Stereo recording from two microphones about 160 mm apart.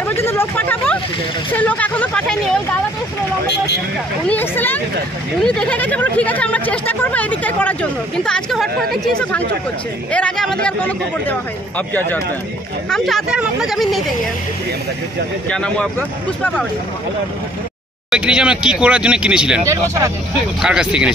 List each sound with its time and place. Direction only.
0.2 s speech: 15° left (ahead or behind)
4.3 s speech: 10° left (ahead or behind)
10.1 s speech: 5° left (ahead or behind)
12.9 s speech: centre (ahead or behind)
15.5 s speech: 5° left (ahead or behind)
18.1 s speech: 5° right (ahead or behind)
19.6 s speech: 20° right (ahead or behind)
20.6 s speech: 5° right (ahead or behind)